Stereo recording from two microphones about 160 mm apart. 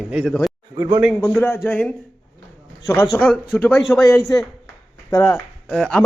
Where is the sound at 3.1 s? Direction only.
5° left (ahead or behind).